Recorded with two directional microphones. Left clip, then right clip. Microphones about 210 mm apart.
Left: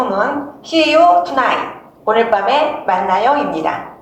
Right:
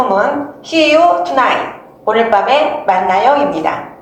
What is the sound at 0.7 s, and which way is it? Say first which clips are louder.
A woman's voice: right 1 dB; 25° right (ahead or behind).